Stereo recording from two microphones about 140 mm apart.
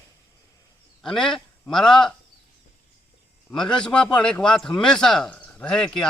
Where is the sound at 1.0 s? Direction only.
5° left (ahead or behind).